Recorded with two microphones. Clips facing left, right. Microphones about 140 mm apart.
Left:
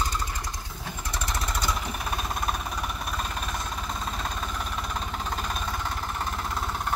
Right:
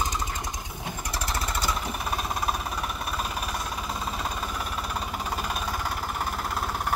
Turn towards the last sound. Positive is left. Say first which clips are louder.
# right 1 dB
turn(degrees=-5)  # may be behind; listen again after turning